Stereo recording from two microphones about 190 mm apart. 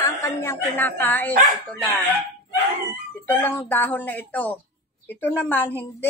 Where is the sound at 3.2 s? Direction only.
10° left (ahead or behind).